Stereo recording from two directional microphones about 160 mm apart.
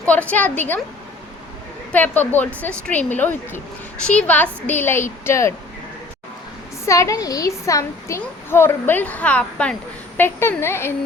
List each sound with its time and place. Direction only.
0.0 s a child's voice: 10° left (ahead or behind)
1.9 s a child's voice: 10° left (ahead or behind)
6.8 s a child's voice: 20° left (ahead or behind)